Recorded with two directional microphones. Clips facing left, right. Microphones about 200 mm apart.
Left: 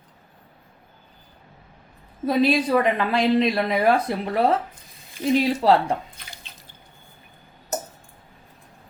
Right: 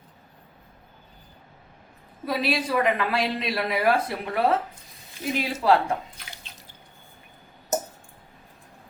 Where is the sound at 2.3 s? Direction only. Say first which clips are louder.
Left 7 dB; 25° left (ahead or behind).